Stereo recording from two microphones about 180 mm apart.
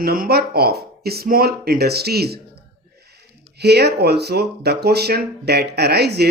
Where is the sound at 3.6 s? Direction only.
65° right (ahead or behind).